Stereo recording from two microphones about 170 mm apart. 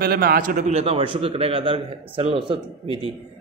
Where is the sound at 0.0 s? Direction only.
65° right (ahead or behind).